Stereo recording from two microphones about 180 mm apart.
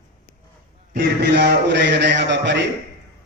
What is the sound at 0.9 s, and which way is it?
A man's voice, 70° right (ahead or behind).